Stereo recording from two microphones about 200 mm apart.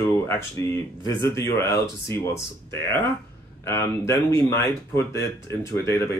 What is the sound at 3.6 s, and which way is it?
Speech, 15° left (ahead or behind).